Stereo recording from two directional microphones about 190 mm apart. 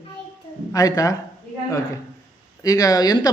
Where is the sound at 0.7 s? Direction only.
20° left (ahead or behind).